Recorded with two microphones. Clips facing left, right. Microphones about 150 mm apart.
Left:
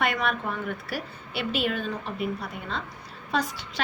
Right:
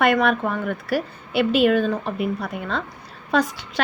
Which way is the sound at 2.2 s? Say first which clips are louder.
Right 6 dB; 65° right (ahead or behind).